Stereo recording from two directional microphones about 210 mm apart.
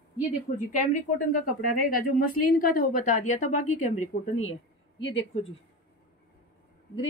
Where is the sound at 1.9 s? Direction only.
45° left (ahead or behind).